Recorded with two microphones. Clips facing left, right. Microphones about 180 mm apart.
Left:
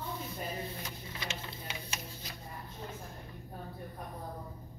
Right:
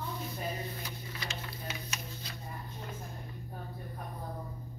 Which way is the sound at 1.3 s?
30° left (ahead or behind).